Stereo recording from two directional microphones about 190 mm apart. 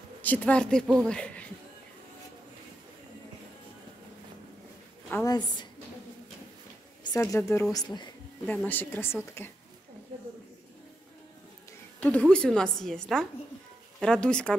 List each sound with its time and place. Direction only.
0.2 s a woman's voice: 5° left (ahead or behind)
5.1 s a woman's voice: 20° left (ahead or behind)
7.0 s a woman's voice: 20° left (ahead or behind)
8.5 s speech: 10° left (ahead or behind)
12.0 s a woman's voice: 10° left (ahead or behind)